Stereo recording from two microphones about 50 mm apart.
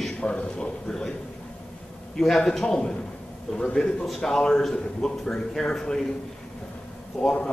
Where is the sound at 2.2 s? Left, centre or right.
Centre.